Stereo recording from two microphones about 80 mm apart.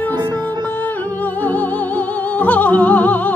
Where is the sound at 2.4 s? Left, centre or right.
Centre.